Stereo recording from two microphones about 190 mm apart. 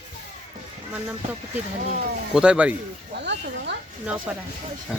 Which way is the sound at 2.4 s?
5° right (ahead or behind).